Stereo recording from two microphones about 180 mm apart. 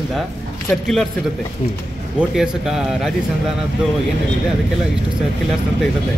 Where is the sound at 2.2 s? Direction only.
5° right (ahead or behind).